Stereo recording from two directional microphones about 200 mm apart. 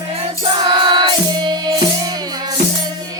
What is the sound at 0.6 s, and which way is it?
Music, 25° right (ahead or behind).